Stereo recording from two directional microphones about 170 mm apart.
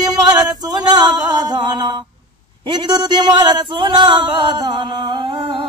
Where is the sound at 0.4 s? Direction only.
25° right (ahead or behind).